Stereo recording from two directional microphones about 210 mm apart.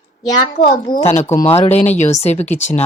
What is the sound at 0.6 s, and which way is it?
Speech, 35° left (ahead or behind).